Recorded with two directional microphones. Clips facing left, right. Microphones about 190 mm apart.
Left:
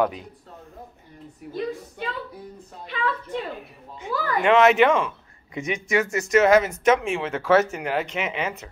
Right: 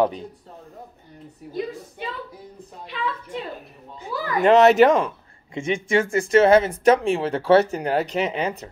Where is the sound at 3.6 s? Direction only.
35° right (ahead or behind).